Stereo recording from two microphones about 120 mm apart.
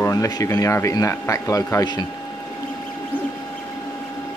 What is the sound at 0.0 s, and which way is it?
Speech, 25° left (ahead or behind).